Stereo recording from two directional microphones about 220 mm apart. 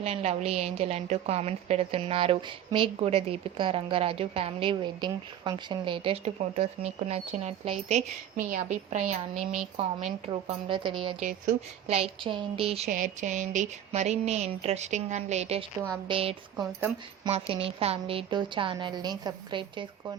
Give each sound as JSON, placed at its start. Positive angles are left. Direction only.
{"t": 0.0, "sound": "a woman's voice", "side_deg": -30}
{"t": 11.2, "sound": "a woman's voice", "side_deg": -35}